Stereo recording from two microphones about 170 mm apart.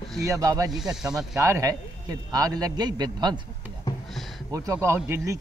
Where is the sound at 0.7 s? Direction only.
5° right (ahead or behind).